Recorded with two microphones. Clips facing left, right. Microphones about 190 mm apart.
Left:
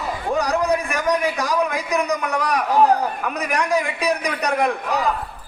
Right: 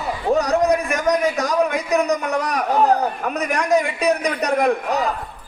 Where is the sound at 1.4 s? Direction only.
35° right (ahead or behind).